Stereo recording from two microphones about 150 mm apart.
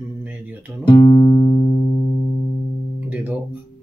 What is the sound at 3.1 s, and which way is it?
Guitar, 10° right (ahead or behind).